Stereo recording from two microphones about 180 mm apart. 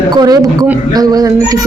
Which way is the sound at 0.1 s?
25° right (ahead or behind).